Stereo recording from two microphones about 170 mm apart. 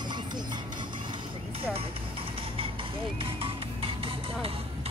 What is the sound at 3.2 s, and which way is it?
Music, 30° right (ahead or behind).